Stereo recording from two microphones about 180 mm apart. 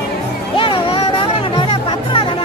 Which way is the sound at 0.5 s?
30° left (ahead or behind).